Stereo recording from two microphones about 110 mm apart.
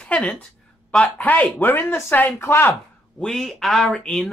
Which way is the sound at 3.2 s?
5° left (ahead or behind).